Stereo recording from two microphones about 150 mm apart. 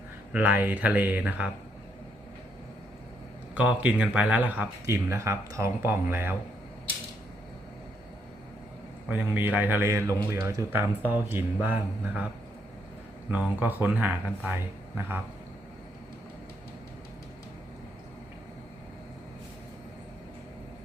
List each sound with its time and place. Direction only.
0.3 s speech: 10° right (ahead or behind)
3.5 s speech: 10° right (ahead or behind)
9.0 s speech: 10° right (ahead or behind)
13.3 s speech: 10° right (ahead or behind)